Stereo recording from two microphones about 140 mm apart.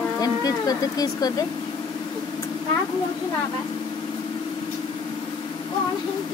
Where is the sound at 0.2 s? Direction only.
25° left (ahead or behind).